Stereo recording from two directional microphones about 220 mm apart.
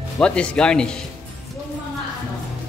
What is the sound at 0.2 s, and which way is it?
Speech, 5° left (ahead or behind).